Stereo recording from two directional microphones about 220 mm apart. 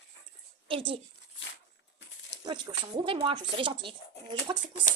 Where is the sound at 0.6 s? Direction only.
25° right (ahead or behind).